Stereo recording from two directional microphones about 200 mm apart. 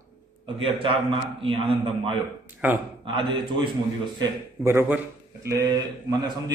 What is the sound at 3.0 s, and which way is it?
Speech, 25° right (ahead or behind).